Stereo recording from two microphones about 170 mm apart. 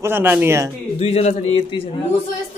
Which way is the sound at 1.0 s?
35° left (ahead or behind).